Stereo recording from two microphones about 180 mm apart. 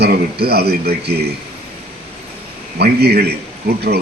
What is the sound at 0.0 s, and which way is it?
A man's voice, 60° right (ahead or behind).